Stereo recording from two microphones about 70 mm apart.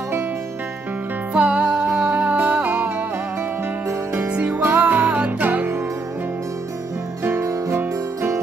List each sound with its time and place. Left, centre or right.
1.3 s music: centre
4.3 s music: centre
7.2 s music: right